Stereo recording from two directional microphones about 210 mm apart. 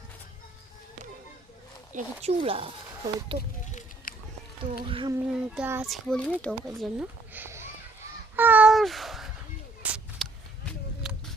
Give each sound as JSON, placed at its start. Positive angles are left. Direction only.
{"t": 1.9, "sound": "speech", "side_deg": -35}
{"t": 2.4, "sound": "speech", "side_deg": -25}
{"t": 3.7, "sound": "a sound", "side_deg": 35}
{"t": 4.8, "sound": "speech", "side_deg": -25}
{"t": 5.5, "sound": "a child's voice", "side_deg": -5}
{"t": 5.9, "sound": "a child's voice", "side_deg": 5}
{"t": 8.4, "sound": "a sound", "side_deg": -10}